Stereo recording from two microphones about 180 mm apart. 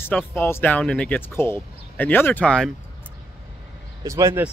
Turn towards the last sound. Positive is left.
turn(degrees=-15)  # may be behind; listen again after turning